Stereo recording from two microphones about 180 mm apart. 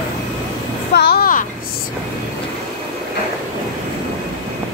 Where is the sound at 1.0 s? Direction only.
60° left (ahead or behind).